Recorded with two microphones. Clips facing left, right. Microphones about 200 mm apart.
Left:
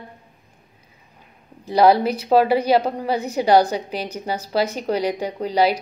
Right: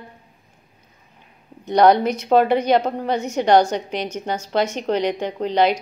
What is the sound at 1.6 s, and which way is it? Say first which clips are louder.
Speech: right 1 dB; 30° left (ahead or behind).